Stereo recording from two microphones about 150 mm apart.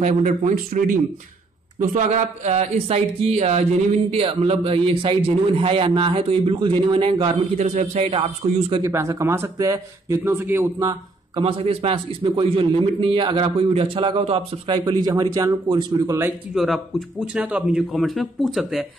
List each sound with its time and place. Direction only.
0.0 s speech: 55° right (ahead or behind); by 8.8 s 35° right (ahead or behind)
8.8 s a man's voice: 20° right (ahead or behind)
16.5 s a man's voice: centre (ahead or behind)